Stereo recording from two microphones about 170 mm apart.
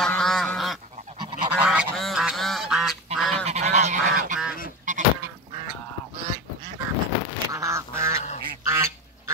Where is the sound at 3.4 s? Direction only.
40° right (ahead or behind).